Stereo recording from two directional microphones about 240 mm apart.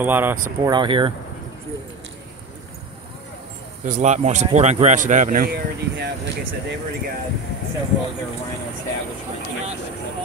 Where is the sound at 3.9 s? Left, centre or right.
Right.